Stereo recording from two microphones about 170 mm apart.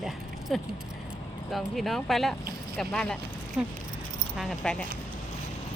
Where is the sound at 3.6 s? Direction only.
5° right (ahead or behind).